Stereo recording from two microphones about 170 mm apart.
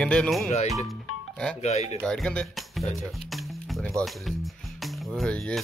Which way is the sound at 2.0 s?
5° left (ahead or behind).